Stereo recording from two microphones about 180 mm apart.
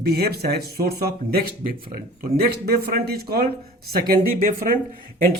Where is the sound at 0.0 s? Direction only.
60° right (ahead or behind).